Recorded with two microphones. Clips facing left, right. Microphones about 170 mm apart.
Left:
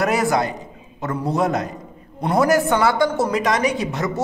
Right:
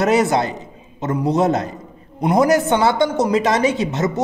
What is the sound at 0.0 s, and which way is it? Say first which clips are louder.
A man's voice: right 3 dB; 25° right (ahead or behind).